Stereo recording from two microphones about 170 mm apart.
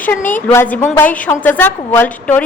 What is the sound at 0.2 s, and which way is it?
Speech, 50° left (ahead or behind).